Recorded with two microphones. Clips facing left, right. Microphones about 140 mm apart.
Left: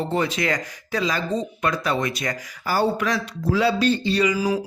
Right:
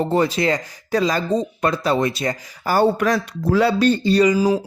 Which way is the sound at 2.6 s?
50° right (ahead or behind).